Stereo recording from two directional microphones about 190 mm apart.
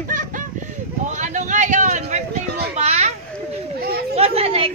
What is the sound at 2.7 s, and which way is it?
Children playing, 35° right (ahead or behind).